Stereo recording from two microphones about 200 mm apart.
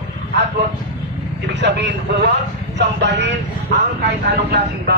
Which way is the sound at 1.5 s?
60° right (ahead or behind).